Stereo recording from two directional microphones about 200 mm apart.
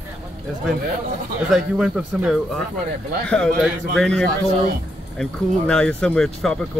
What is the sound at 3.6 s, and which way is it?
Speech, centre (ahead or behind).